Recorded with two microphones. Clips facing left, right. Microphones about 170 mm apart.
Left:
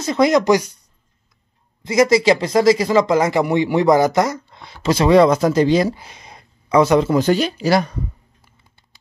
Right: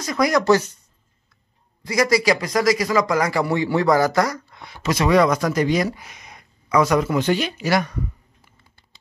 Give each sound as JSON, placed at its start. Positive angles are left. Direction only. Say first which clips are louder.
{"t": 0.0, "sound": "speech", "louder": "left 4 dB", "side_deg": 25}
{"t": 1.8, "sound": "speech", "louder": "left 5 dB", "side_deg": 25}